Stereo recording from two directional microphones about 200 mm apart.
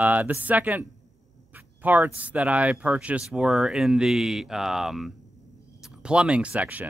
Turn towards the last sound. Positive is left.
turn(degrees=-5)  # may be behind; listen again after turning